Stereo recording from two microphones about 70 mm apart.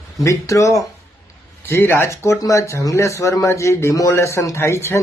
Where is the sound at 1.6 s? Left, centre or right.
Left.